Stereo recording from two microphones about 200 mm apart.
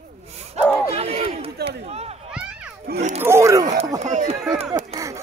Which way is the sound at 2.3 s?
5° right (ahead or behind).